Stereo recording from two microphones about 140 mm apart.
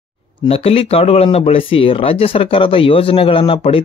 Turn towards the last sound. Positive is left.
turn(degrees=40)  # may be behind; listen again after turning